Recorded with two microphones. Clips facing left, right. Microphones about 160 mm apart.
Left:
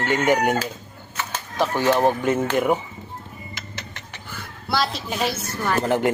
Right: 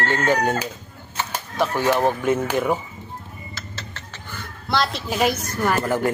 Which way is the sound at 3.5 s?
15° left (ahead or behind).